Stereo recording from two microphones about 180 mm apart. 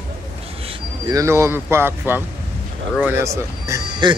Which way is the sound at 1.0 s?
15° right (ahead or behind).